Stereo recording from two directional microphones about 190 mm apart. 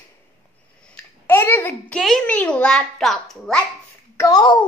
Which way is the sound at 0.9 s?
10° left (ahead or behind).